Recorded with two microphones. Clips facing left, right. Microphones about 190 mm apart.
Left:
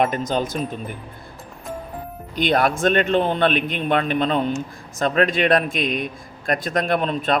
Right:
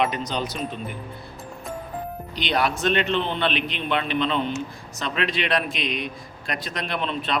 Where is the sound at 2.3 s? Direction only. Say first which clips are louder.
Left 5 dB; 50° left (ahead or behind).